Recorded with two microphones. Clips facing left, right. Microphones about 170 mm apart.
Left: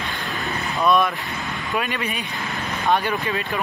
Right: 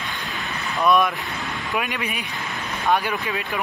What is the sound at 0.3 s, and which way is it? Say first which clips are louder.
Vehicle: left 4 dB; 35° left (ahead or behind).